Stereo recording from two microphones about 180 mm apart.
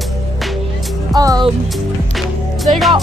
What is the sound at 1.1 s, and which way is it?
Speech, 20° right (ahead or behind).